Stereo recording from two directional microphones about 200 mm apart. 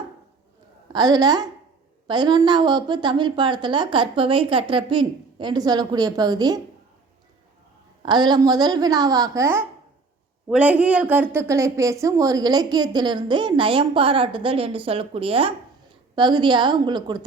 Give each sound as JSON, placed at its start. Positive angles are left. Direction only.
{"t": 0.9, "sound": "a woman's voice", "side_deg": -20}
{"t": 8.0, "sound": "a woman's voice", "side_deg": -20}